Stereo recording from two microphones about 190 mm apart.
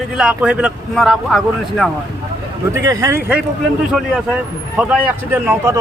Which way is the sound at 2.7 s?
15° right (ahead or behind).